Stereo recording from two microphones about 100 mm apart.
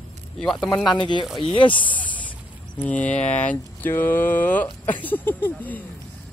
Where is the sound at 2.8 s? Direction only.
15° left (ahead or behind).